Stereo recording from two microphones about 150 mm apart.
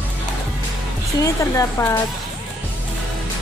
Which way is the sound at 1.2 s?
20° left (ahead or behind).